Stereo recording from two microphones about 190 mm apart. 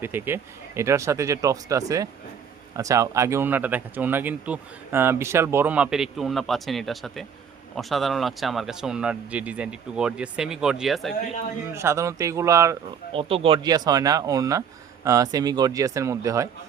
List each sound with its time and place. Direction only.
0.0 s speech: 10° right (ahead or behind)
11.7 s speech: 15° right (ahead or behind)
13.1 s speech: 30° right (ahead or behind)